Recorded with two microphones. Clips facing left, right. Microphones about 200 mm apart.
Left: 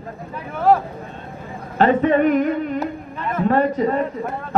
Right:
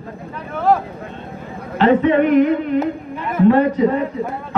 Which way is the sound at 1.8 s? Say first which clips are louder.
Right 2 dB; 45° left (ahead or behind).